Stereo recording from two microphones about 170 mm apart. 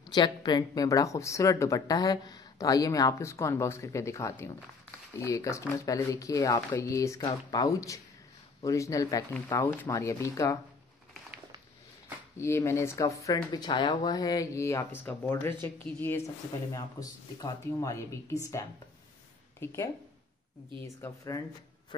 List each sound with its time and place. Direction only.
0.1 s speech: 25° left (ahead or behind)
12.4 s speech: 15° left (ahead or behind)
19.6 s speech: 15° left (ahead or behind)